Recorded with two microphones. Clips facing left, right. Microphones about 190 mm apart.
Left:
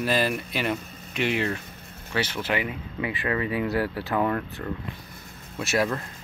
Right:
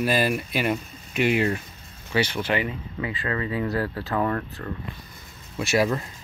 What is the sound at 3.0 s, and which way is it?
Speech, 20° left (ahead or behind).